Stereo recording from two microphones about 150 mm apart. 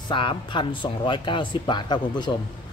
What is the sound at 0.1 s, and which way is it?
Speech, 35° left (ahead or behind).